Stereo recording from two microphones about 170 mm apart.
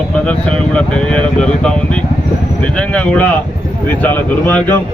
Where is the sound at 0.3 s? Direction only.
5° left (ahead or behind).